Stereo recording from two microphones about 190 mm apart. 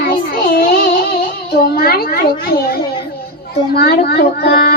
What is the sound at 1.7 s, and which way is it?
Child singing, 55° left (ahead or behind).